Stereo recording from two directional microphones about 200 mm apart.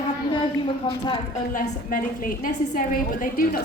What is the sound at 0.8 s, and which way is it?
Speech, 25° left (ahead or behind).